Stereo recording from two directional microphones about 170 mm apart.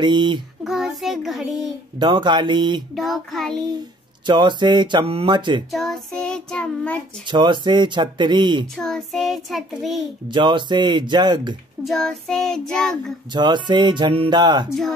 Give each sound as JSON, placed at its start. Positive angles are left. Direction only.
{"t": 0.0, "sound": "speech", "side_deg": -25}
{"t": 0.7, "sound": "a sound", "side_deg": 0}
{"t": 2.0, "sound": "speech", "side_deg": -25}
{"t": 2.9, "sound": "child singing", "side_deg": 0}
{"t": 4.3, "sound": "speech", "side_deg": -25}
{"t": 5.7, "sound": "child singing", "side_deg": 0}
{"t": 7.2, "sound": "speech", "side_deg": -25}
{"t": 8.7, "sound": "child singing", "side_deg": 5}
{"t": 10.3, "sound": "speech", "side_deg": -25}
{"t": 11.8, "sound": "child singing", "side_deg": 5}
{"t": 13.3, "sound": "speech", "side_deg": -25}